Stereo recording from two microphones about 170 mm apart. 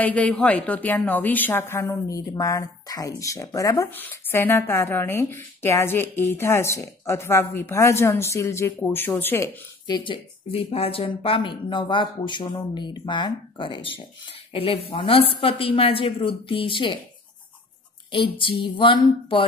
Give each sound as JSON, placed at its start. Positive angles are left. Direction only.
{"t": 0.0, "sound": "a woman's voice", "side_deg": 10}
{"t": 9.8, "sound": "speech", "side_deg": 25}
{"t": 18.1, "sound": "speech", "side_deg": 30}